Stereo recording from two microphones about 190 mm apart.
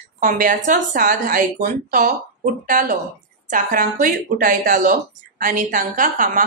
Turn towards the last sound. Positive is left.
turn(degrees=-45)  # may be behind; listen again after turning